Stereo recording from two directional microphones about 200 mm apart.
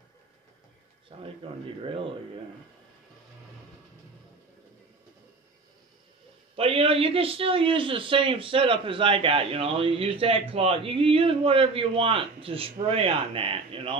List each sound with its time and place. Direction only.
1.1 s a man's voice: 30° right (ahead or behind)
6.5 s a man's voice: 30° right (ahead or behind)